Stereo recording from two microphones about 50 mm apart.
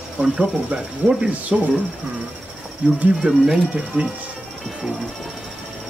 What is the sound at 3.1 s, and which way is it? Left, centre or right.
Speech, centre.